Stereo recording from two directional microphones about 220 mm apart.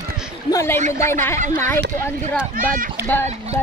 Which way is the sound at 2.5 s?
40° right (ahead or behind).